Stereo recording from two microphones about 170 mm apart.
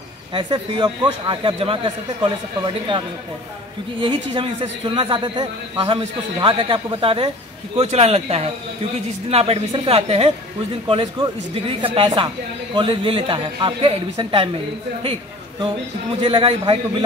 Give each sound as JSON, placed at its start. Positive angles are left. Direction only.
{"t": 0.3, "sound": "a man's voice", "side_deg": -30}
{"t": 4.0, "sound": "a man's voice", "side_deg": -30}
{"t": 16.2, "sound": "a man's voice", "side_deg": -30}